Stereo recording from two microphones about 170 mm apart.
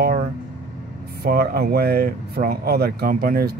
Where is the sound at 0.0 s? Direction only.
65° right (ahead or behind).